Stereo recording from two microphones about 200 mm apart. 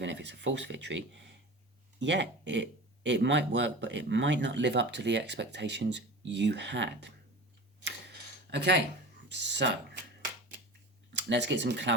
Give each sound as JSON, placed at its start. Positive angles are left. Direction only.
{"t": 0.0, "sound": "speech", "side_deg": -60}
{"t": 8.4, "sound": "speech", "side_deg": -60}
{"t": 11.1, "sound": "speech", "side_deg": -60}